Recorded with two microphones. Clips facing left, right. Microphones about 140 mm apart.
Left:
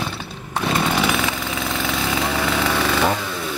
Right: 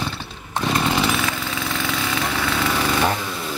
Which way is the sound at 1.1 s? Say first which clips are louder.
Left 1 dB; centre (ahead or behind).